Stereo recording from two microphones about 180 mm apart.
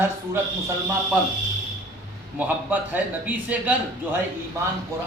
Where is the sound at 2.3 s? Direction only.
10° right (ahead or behind).